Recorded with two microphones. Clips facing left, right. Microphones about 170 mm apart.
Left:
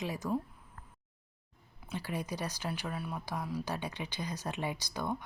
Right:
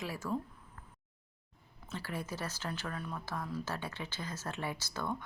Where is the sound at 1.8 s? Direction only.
15° left (ahead or behind).